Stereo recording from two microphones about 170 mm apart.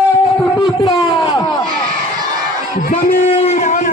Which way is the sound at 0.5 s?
25° left (ahead or behind).